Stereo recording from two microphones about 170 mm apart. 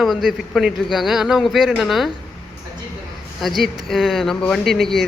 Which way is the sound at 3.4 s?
Centre (ahead or behind).